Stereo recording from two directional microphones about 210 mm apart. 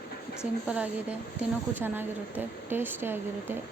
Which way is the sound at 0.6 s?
5° right (ahead or behind).